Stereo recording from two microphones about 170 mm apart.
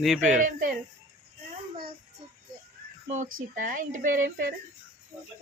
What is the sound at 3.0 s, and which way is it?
Speech, 50° right (ahead or behind).